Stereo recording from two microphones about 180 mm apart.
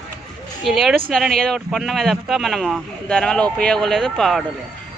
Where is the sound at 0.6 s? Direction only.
Centre (ahead or behind).